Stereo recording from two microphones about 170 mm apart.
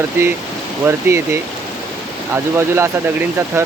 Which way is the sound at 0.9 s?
15° right (ahead or behind).